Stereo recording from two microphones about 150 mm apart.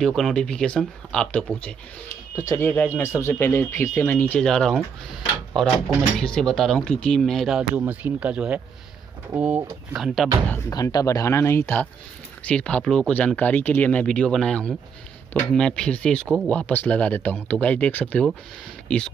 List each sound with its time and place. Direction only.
0.0 s speech: 5° left (ahead or behind)
10.7 s speech: 25° left (ahead or behind)